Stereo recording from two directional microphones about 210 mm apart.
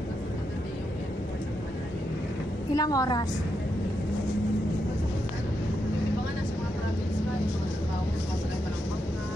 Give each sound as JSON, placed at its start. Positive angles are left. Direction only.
{"t": 2.7, "sound": "a woman's voice", "side_deg": 15}